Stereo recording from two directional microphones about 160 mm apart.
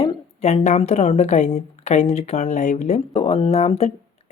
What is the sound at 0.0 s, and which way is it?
A woman's voice, 35° left (ahead or behind).